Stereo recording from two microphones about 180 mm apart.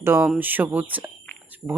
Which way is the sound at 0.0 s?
15° right (ahead or behind).